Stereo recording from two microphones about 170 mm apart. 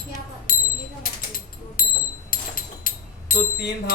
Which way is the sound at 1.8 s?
55° left (ahead or behind).